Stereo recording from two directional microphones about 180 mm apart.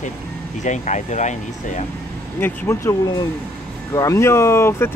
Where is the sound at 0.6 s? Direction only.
40° left (ahead or behind).